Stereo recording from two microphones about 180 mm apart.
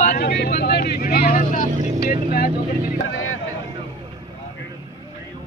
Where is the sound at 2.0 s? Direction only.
55° left (ahead or behind).